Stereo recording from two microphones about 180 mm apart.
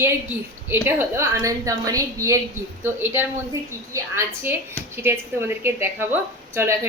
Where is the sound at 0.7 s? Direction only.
10° right (ahead or behind).